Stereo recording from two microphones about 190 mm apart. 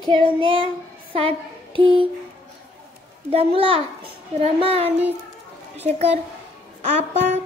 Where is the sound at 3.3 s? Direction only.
30° right (ahead or behind).